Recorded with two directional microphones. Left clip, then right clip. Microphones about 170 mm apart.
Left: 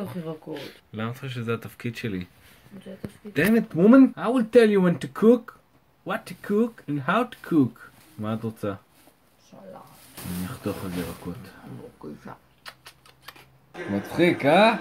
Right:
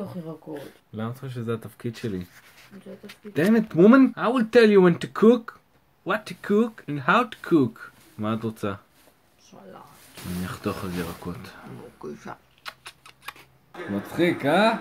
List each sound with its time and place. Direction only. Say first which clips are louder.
0.0 s speech: left 1 dB; centre (ahead or behind)
0.9 s speech: left 1 dB; 20° right (ahead or behind)
3.3 s speech: right 2 dB; 25° right (ahead or behind)
10.4 s speech: right 3 dB; 25° right (ahead or behind)
12.0 s shuffling cards: right 7 dB; 20° right (ahead or behind)
14.1 s speech: left 3 dB; 30° left (ahead or behind)